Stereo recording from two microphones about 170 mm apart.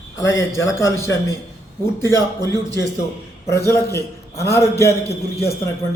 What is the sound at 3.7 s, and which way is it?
A man's voice, 15° left (ahead or behind).